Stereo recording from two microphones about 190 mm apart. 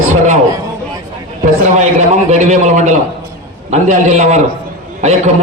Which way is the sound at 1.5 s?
40° right (ahead or behind).